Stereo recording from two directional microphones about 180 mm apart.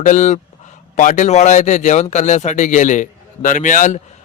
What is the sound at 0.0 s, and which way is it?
A man's voice, 40° left (ahead or behind).